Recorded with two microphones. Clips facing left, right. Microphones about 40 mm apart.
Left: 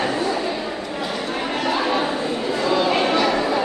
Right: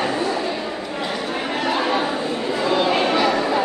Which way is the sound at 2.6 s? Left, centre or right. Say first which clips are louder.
Even; right.